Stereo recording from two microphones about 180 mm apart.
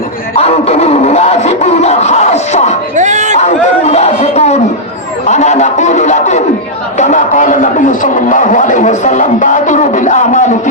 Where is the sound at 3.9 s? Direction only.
35° left (ahead or behind).